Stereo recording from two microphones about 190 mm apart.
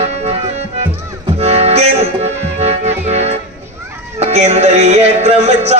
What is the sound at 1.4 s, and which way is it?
Music, 35° right (ahead or behind).